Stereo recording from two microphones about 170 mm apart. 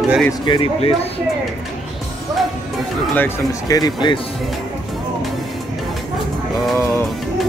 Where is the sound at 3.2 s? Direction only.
20° left (ahead or behind).